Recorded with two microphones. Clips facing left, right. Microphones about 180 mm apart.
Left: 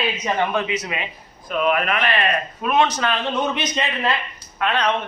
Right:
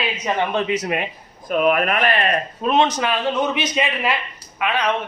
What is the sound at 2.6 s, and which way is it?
Speech, 20° right (ahead or behind).